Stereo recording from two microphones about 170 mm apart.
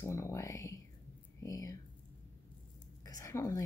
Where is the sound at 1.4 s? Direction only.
20° left (ahead or behind).